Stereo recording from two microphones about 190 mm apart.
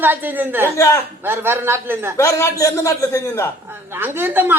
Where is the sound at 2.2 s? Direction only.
15° left (ahead or behind).